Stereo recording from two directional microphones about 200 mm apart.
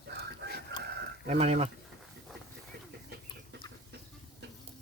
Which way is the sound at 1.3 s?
35° right (ahead or behind).